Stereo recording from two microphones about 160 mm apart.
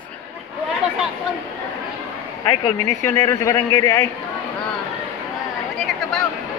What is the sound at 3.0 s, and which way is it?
Speech, 20° left (ahead or behind).